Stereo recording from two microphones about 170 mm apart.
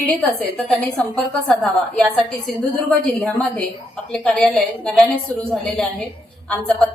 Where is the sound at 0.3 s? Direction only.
Centre (ahead or behind).